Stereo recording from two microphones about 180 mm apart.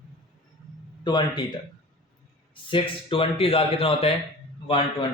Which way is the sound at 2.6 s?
30° left (ahead or behind).